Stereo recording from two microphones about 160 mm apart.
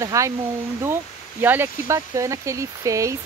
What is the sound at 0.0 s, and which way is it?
Speech, 20° right (ahead or behind).